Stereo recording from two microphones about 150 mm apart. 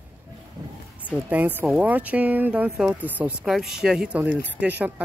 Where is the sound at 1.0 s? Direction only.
10° right (ahead or behind).